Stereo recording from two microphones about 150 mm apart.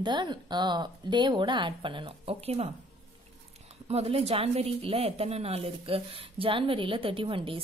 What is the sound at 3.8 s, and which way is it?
A woman's voice, 45° right (ahead or behind).